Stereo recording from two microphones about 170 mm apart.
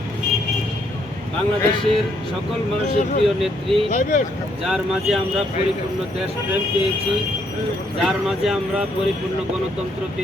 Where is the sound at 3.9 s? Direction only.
50° left (ahead or behind).